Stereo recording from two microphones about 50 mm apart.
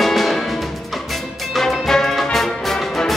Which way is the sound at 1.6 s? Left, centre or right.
Centre.